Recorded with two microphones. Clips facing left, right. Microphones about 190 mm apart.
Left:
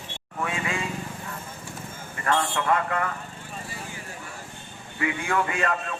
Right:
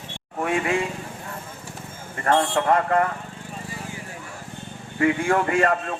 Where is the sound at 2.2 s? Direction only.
40° right (ahead or behind).